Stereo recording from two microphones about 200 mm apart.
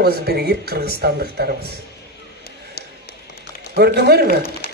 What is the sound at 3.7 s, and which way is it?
Speech, 55° right (ahead or behind).